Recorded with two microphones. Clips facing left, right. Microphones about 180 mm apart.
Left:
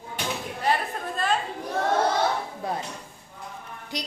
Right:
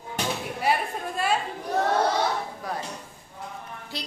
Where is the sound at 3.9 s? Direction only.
15° left (ahead or behind).